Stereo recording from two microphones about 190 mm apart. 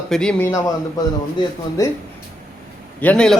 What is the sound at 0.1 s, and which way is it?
Speech, 5° left (ahead or behind).